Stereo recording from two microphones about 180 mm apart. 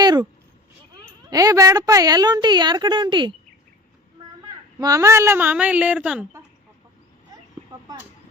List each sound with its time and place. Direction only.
0.0 s a sound: 25° right (ahead or behind)
1.3 s a woman's voice: 20° right (ahead or behind)
4.8 s speech: 20° right (ahead or behind)